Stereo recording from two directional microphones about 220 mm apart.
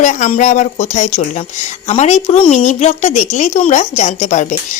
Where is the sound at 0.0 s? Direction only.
35° left (ahead or behind).